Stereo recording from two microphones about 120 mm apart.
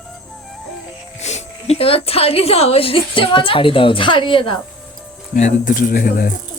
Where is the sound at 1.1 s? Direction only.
70° left (ahead or behind); by 4.6 s 45° left (ahead or behind).